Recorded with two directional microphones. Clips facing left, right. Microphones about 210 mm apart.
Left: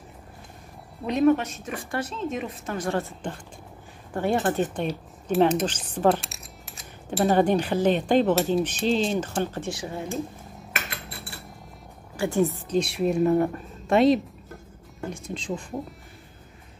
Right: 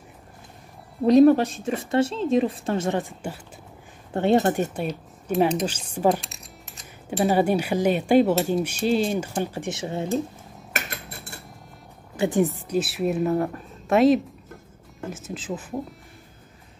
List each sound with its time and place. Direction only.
1.0 s a woman's voice: 35° right (ahead or behind); by 3.3 s 10° right (ahead or behind)
4.1 s speech: 25° right (ahead or behind)
4.5 s speech: 10° right (ahead or behind)
10.7 s cutlery: 45° right (ahead or behind)
12.2 s a woman's voice: 20° right (ahead or behind)
12.6 s a woman's voice: 5° right (ahead or behind)